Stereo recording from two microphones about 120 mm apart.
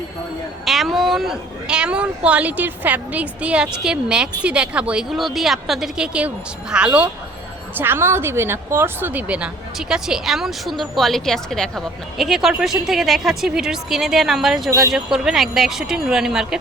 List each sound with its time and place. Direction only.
0.6 s a woman's voice: centre (ahead or behind)
14.7 s speech: 25° right (ahead or behind)
14.9 s a woman's voice: 5° right (ahead or behind)